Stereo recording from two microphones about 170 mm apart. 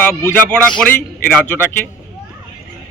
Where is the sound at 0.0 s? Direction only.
15° left (ahead or behind).